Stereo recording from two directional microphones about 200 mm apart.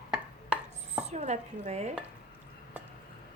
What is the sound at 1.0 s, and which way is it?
Dishes, 35° right (ahead or behind).